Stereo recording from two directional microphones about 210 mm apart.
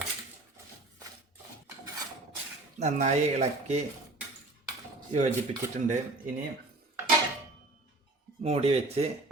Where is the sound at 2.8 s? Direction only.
30° right (ahead or behind).